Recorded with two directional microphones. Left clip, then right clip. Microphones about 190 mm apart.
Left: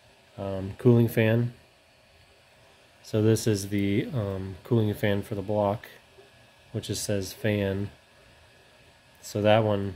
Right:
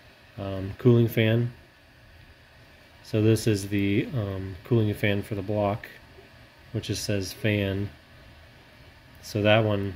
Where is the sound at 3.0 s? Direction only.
20° left (ahead or behind).